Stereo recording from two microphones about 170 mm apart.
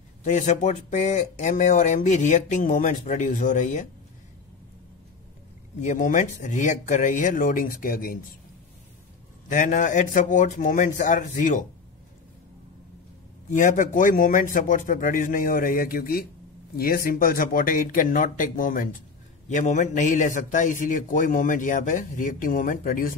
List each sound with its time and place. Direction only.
0.2 s speech: 45° left (ahead or behind)
5.8 s speech: 45° left (ahead or behind)
9.5 s speech: 50° left (ahead or behind)
13.5 s speech: 50° left (ahead or behind)